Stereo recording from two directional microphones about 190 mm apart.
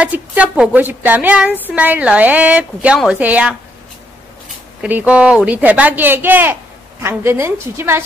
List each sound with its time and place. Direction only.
0.0 s a woman's voice: 10° right (ahead or behind)
4.8 s a woman's voice: 5° right (ahead or behind)